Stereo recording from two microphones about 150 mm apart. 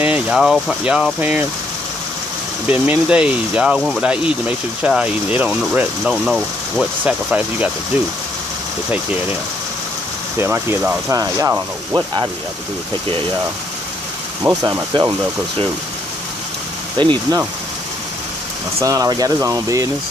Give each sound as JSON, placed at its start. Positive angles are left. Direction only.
{"t": 0.0, "sound": "speech", "side_deg": -5}
{"t": 2.7, "sound": "speech", "side_deg": -10}
{"t": 10.4, "sound": "speech", "side_deg": -15}
{"t": 14.6, "sound": "speech", "side_deg": -25}
{"t": 17.0, "sound": "speech", "side_deg": -30}
{"t": 18.8, "sound": "speech", "side_deg": -25}